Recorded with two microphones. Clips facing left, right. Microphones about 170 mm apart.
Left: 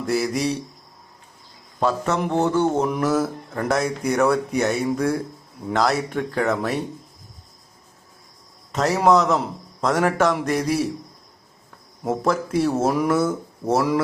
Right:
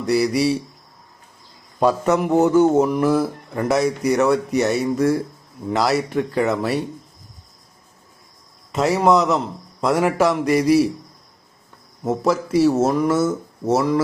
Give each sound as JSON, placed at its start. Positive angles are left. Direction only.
{"t": 0.0, "sound": "a man's voice", "side_deg": 0}
{"t": 1.8, "sound": "a man's voice", "side_deg": -15}
{"t": 2.1, "sound": "a man's voice", "side_deg": -5}
{"t": 8.7, "sound": "a man's voice", "side_deg": 0}
{"t": 12.2, "sound": "a man's voice", "side_deg": -5}